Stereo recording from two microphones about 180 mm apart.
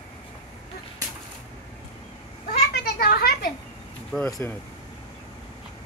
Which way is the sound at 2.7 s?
60° left (ahead or behind).